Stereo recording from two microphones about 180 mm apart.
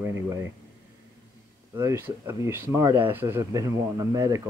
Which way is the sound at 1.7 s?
15° right (ahead or behind).